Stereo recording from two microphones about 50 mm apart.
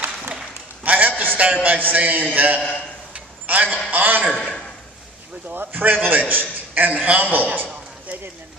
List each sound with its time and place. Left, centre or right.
0.8 s a man's voice: right
5.5 s a man's voice: right